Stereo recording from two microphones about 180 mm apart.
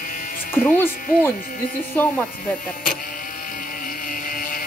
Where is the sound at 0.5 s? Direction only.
10° left (ahead or behind).